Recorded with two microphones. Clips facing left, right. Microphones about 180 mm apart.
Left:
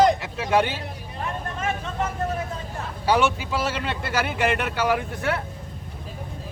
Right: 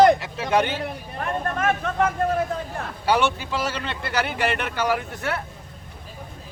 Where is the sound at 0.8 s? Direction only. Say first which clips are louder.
Right 3 dB; 60° right (ahead or behind).